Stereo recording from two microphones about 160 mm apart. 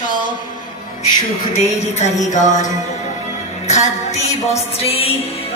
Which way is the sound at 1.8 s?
45° left (ahead or behind).